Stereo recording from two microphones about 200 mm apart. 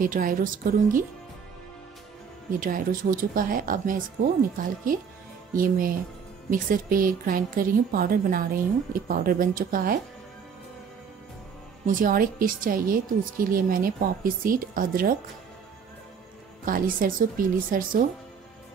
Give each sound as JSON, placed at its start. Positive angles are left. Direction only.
{"t": 0.0, "sound": "a woman's voice", "side_deg": -45}
{"t": 2.6, "sound": "a woman's voice", "side_deg": -45}
{"t": 11.8, "sound": "a woman's voice", "side_deg": -45}
{"t": 16.6, "sound": "a woman's voice", "side_deg": -45}